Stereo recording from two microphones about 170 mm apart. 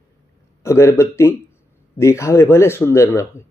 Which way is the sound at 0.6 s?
15° left (ahead or behind).